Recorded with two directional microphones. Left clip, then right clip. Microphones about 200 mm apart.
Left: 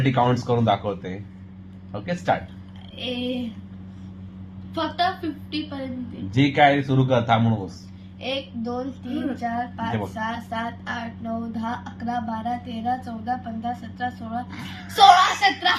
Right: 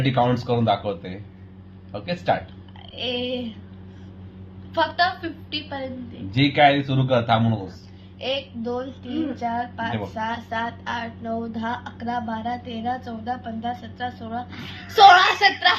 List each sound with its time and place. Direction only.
0.0 s speech: 10° left (ahead or behind)
3.0 s speech: 15° right (ahead or behind)
4.7 s speech: 15° right (ahead or behind)
6.3 s speech: 15° left (ahead or behind)
8.2 s speech: 15° right (ahead or behind)